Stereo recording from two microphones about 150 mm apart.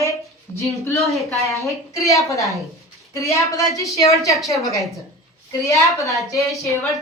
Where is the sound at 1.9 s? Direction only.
20° left (ahead or behind).